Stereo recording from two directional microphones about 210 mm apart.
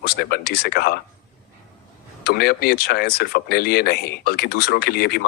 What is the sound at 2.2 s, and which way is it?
Speech, 45° left (ahead or behind).